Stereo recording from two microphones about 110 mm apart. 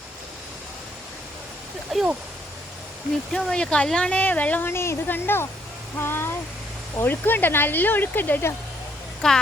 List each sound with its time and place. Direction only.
1.9 s a woman's voice: centre (ahead or behind)
3.3 s speech: 5° left (ahead or behind)
9.2 s a woman's voice: 5° left (ahead or behind)